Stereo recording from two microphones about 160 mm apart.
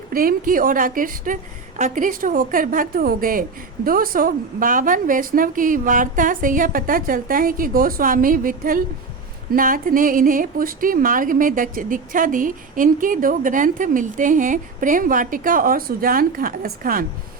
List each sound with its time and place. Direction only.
0.1 s a woman's voice: 65° right (ahead or behind)